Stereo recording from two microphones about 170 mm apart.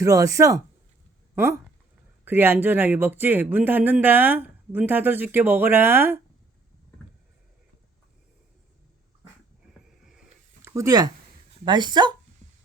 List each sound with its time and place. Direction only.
0.0 s speech: 20° right (ahead or behind)
2.2 s speech: 10° right (ahead or behind)
10.6 s speech: 15° right (ahead or behind)